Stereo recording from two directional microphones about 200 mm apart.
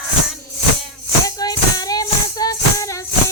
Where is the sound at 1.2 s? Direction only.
20° left (ahead or behind).